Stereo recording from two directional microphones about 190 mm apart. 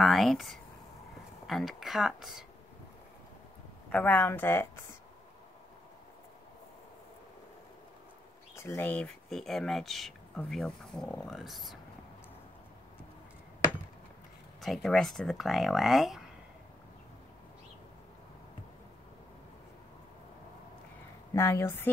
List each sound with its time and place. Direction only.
0.0 s speech: centre (ahead or behind)
3.9 s speech: 10° left (ahead or behind)
8.5 s speech: 10° left (ahead or behind)
14.6 s speech: centre (ahead or behind)
21.3 s speech: 15° left (ahead or behind)